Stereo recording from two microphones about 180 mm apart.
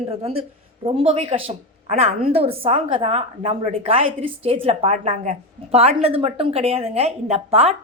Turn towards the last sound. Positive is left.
turn(degrees=-35)  # may be behind; listen again after turning